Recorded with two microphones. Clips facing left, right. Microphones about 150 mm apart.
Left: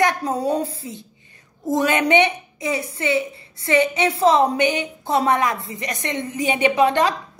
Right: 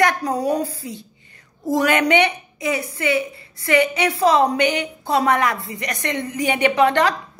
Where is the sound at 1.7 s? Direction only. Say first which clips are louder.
Even; 25° left (ahead or behind).